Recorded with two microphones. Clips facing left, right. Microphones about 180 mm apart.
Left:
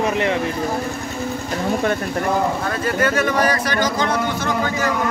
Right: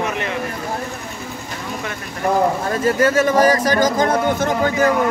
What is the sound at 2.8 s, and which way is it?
Speech, 40° right (ahead or behind).